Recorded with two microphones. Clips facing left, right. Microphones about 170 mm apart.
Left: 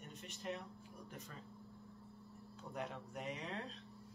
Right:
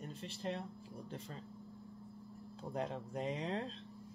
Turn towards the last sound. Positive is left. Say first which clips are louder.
# right 6 dB
turn(degrees=-30)  # may be behind; listen again after turning